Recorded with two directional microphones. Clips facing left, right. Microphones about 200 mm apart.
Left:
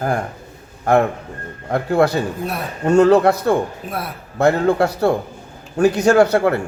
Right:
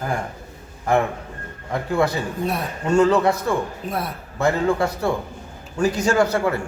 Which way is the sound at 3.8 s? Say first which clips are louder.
Right 1 dB; 5° left (ahead or behind).